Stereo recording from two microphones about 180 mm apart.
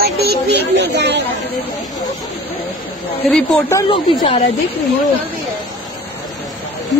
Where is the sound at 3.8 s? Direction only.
35° left (ahead or behind).